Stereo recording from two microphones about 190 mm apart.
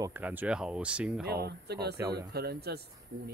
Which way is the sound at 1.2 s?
60° right (ahead or behind).